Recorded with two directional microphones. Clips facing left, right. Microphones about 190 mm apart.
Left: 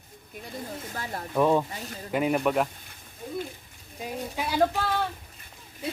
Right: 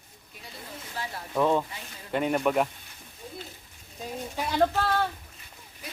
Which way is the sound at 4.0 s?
10° left (ahead or behind).